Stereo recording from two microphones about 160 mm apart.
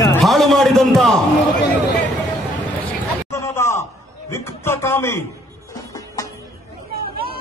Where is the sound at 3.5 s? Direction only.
15° left (ahead or behind).